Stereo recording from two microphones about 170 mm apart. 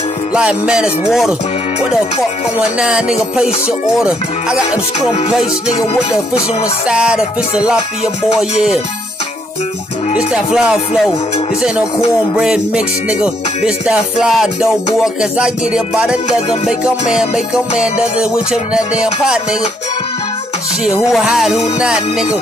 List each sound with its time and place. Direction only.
0.3 s music: 5° right (ahead or behind)
2.8 s music: 5° right (ahead or behind)
4.6 s music: 40° left (ahead or behind)
6.9 s music: 5° right (ahead or behind)
10.1 s music: 5° right (ahead or behind)
17.7 s music: 5° right (ahead or behind)
21.1 s music: centre (ahead or behind)